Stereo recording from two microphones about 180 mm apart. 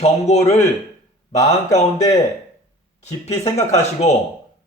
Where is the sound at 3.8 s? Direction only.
40° left (ahead or behind).